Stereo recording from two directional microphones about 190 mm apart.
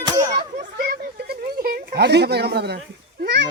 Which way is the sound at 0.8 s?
55° right (ahead or behind).